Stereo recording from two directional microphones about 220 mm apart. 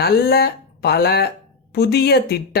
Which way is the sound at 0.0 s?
45° left (ahead or behind).